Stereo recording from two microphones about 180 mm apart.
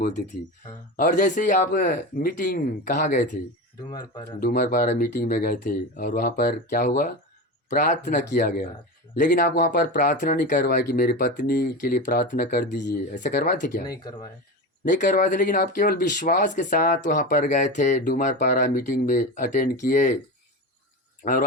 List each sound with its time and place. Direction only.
0.9 s speech: 45° left (ahead or behind)
4.4 s speech: 55° left (ahead or behind)
13.9 s speech: 25° left (ahead or behind)
15.0 s speech: 50° left (ahead or behind)
21.2 s speech: 45° left (ahead or behind)